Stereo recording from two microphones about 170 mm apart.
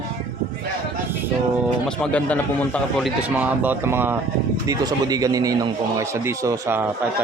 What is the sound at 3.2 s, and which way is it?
Speech, 10° right (ahead or behind).